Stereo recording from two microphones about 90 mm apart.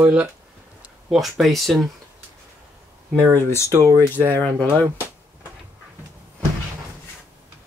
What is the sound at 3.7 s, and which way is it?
Speech, 40° right (ahead or behind).